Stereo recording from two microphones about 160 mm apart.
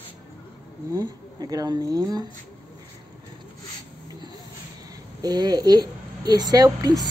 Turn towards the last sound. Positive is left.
turn(degrees=-25)  # may be behind; listen again after turning